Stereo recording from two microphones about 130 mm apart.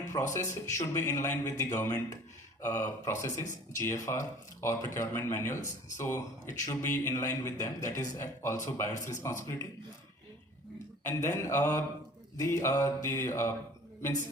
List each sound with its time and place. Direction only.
0.1 s a man's voice: 20° left (ahead or behind)
11.0 s a man's voice: 20° left (ahead or behind)